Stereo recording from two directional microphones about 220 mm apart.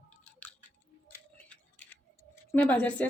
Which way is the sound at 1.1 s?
10° left (ahead or behind).